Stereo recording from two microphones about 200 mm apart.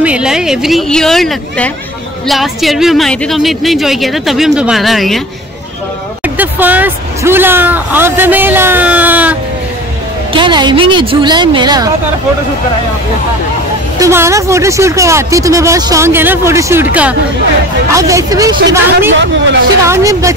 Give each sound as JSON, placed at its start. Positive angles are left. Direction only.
{"t": 0.0, "sound": "a woman's voice", "side_deg": -5}
{"t": 6.2, "sound": "speech", "side_deg": -10}
{"t": 10.3, "sound": "a woman's voice", "side_deg": -25}
{"t": 13.9, "sound": "speech", "side_deg": -15}
{"t": 17.9, "sound": "speech", "side_deg": -15}